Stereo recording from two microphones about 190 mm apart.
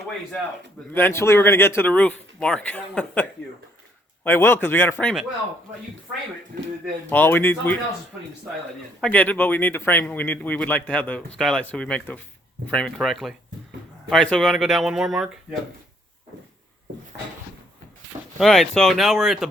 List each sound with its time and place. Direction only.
0.9 s speech: 15° left (ahead or behind)
6.5 s speech: 50° right (ahead or behind)
7.1 s speech: 10° left (ahead or behind)
9.0 s speech: 5° left (ahead or behind)
18.3 s speech: centre (ahead or behind)